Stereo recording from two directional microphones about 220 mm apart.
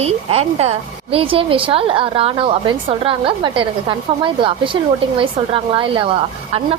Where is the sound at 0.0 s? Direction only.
30° right (ahead or behind).